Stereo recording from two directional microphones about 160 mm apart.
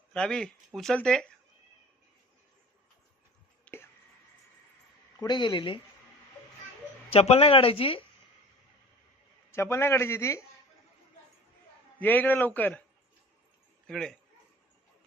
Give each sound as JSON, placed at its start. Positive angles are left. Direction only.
{"t": 0.1, "sound": "speech", "side_deg": 5}
{"t": 3.7, "sound": "a sound", "side_deg": 5}
{"t": 5.2, "sound": "speech", "side_deg": 30}
{"t": 7.1, "sound": "speech", "side_deg": 40}
{"t": 9.5, "sound": "a man's voice", "side_deg": 15}
{"t": 11.9, "sound": "a man's voice", "side_deg": 10}
{"t": 13.8, "sound": "speech", "side_deg": 5}